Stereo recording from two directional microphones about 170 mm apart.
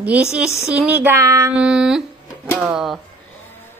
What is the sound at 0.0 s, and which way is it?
Speech, 5° right (ahead or behind).